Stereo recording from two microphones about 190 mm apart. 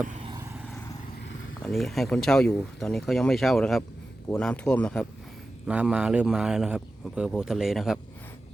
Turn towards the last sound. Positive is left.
turn(degrees=0)  # may be behind; listen again after turning